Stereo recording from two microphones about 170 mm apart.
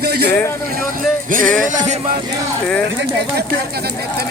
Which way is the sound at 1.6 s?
50° right (ahead or behind).